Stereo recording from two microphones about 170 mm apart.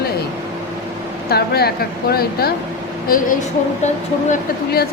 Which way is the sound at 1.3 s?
65° left (ahead or behind).